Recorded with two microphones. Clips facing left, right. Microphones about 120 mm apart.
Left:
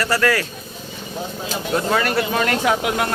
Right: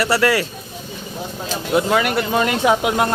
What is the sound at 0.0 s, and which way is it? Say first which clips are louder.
Speech: right 2 dB; 25° right (ahead or behind).